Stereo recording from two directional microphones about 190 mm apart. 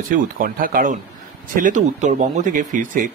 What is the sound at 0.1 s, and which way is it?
A man's voice, 45° right (ahead or behind).